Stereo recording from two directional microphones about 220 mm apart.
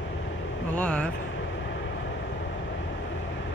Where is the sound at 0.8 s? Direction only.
5° left (ahead or behind).